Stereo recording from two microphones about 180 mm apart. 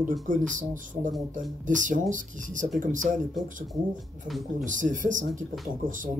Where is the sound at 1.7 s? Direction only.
45° right (ahead or behind).